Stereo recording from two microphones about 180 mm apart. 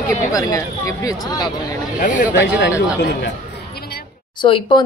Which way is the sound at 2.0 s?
45° left (ahead or behind).